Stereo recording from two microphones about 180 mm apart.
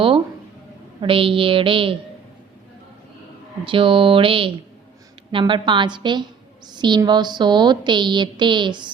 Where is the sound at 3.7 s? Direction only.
30° right (ahead or behind).